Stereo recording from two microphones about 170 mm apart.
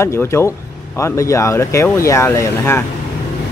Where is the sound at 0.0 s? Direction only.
15° left (ahead or behind).